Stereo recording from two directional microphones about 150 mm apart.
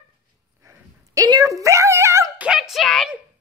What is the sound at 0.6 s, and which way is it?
Dog, 25° right (ahead or behind).